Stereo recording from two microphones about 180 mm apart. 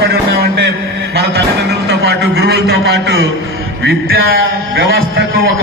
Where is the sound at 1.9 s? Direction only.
65° right (ahead or behind).